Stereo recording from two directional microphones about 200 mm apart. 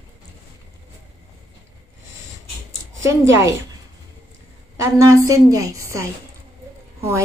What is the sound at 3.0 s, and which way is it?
Speech, 15° right (ahead or behind).